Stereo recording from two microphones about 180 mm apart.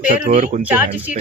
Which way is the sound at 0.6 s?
10° right (ahead or behind).